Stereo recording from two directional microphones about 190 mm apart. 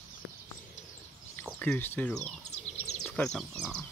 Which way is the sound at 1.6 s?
10° left (ahead or behind).